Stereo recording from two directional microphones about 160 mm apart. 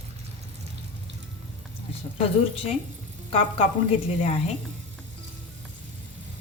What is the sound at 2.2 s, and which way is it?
Speech, 35° left (ahead or behind).